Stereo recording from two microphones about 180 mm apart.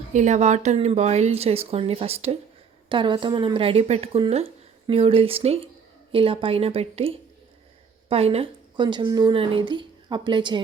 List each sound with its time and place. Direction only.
0.1 s speech: 40° right (ahead or behind); by 10.6 s 25° right (ahead or behind)